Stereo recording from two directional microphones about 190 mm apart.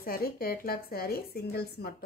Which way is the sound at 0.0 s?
50° left (ahead or behind).